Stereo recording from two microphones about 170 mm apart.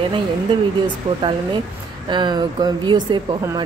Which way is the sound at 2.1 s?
25° right (ahead or behind).